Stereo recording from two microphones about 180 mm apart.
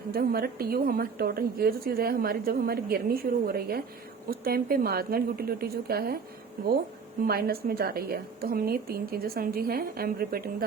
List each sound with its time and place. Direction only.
0.1 s a woman's voice: 55° right (ahead or behind)
7.3 s a woman's voice: 60° right (ahead or behind)